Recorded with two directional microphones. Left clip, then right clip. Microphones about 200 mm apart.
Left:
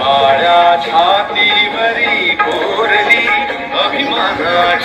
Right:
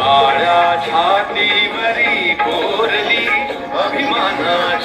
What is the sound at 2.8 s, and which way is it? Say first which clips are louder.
Music: left 7 dB; 30° left (ahead or behind).